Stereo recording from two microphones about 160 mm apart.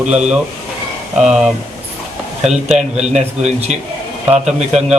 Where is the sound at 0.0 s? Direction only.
5° right (ahead or behind).